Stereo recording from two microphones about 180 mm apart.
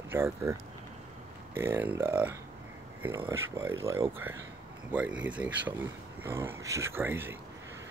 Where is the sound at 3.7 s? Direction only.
15° right (ahead or behind).